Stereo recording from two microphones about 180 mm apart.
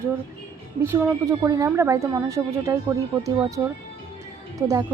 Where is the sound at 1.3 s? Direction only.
20° right (ahead or behind).